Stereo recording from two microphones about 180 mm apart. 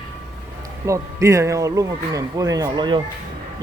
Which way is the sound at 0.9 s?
15° right (ahead or behind).